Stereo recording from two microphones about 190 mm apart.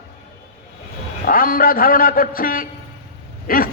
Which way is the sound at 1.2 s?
45° left (ahead or behind).